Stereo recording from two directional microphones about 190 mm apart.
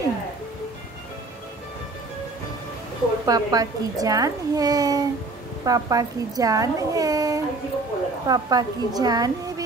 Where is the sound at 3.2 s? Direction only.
20° right (ahead or behind).